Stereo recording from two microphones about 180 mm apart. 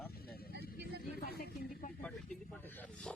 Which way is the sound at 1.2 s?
60° left (ahead or behind).